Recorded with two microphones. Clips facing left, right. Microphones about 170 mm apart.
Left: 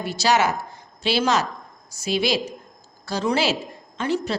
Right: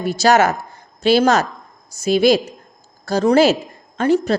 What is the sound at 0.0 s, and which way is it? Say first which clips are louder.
Music: right 6 dB; 50° right (ahead or behind).